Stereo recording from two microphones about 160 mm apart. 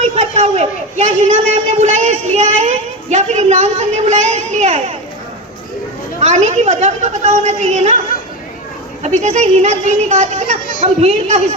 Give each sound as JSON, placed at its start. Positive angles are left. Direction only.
{"t": 0.0, "sound": "a man's voice", "side_deg": -45}
{"t": 6.2, "sound": "a woman's voice", "side_deg": -45}
{"t": 9.0, "sound": "a woman's voice", "side_deg": -45}